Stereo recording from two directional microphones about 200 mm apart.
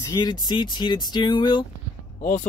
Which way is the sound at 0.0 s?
20° left (ahead or behind).